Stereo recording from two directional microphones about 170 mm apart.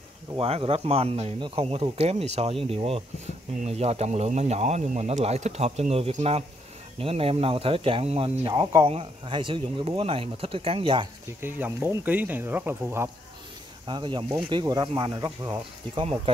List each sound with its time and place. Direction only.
0.4 s speech: 35° right (ahead or behind)
11.4 s speech: 10° right (ahead or behind)
13.8 s speech: 30° right (ahead or behind)